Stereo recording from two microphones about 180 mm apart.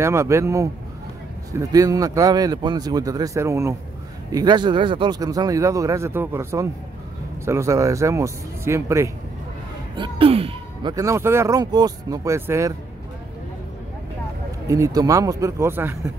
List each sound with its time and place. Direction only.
0.0 s speech: 15° right (ahead or behind)
9.9 s speech: 30° right (ahead or behind)
14.7 s speech: 20° right (ahead or behind)